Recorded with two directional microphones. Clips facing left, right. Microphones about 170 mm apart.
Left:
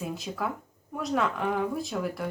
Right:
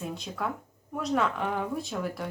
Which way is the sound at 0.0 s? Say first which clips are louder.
Left 1 dB; 5° left (ahead or behind).